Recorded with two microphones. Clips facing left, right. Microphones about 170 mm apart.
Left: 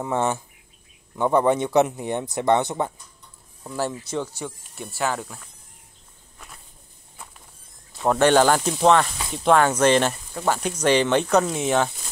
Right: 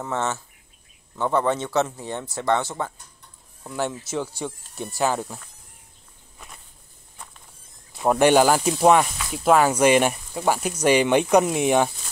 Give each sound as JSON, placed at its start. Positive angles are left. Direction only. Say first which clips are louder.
{"t": 0.0, "sound": "speech", "louder": "left 3 dB", "side_deg": 15}
{"t": 3.6, "sound": "speech", "louder": "even", "side_deg": 0}
{"t": 6.3, "sound": "walk", "louder": "right 1 dB", "side_deg": 0}
{"t": 8.0, "sound": "speech", "louder": "right 1 dB", "side_deg": -10}